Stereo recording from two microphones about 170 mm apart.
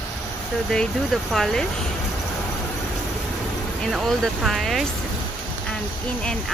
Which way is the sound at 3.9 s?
Centre (ahead or behind).